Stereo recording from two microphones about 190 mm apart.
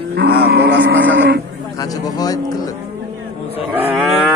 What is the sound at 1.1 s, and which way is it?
Speech, 70° right (ahead or behind).